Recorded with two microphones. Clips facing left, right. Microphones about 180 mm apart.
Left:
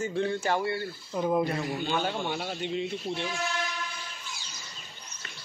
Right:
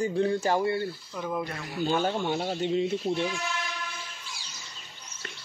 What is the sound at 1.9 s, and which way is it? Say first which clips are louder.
Speech: right 7 dB; 40° right (ahead or behind).